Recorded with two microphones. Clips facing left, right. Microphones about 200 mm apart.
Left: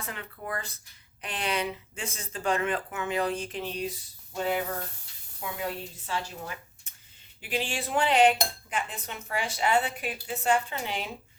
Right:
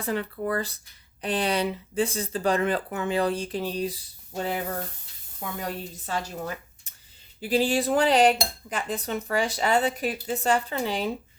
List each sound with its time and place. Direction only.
0.0 s a woman's voice: 35° right (ahead or behind)